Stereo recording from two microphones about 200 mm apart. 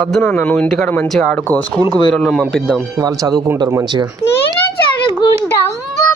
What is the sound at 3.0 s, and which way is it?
Speech, 15° right (ahead or behind).